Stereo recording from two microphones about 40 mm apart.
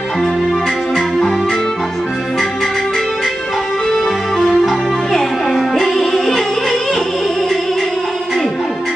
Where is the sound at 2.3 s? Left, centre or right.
Centre.